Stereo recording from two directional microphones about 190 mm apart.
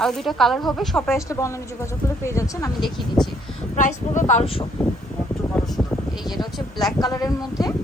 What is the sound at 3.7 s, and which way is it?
Speech, 40° left (ahead or behind).